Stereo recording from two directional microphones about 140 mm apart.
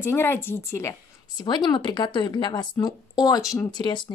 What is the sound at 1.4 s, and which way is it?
Speech, 30° left (ahead or behind).